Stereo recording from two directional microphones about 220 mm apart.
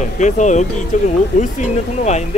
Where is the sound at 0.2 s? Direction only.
35° left (ahead or behind).